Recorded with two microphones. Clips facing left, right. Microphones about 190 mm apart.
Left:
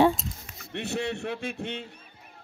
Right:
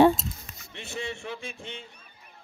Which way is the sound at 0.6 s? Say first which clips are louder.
Left 8 dB; 65° left (ahead or behind).